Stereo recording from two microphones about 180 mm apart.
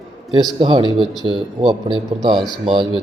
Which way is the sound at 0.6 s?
30° right (ahead or behind).